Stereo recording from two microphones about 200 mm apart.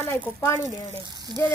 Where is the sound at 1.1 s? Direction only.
20° right (ahead or behind).